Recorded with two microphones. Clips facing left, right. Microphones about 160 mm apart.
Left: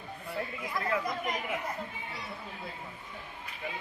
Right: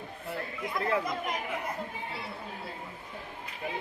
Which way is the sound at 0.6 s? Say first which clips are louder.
Right 4 dB; 30° right (ahead or behind).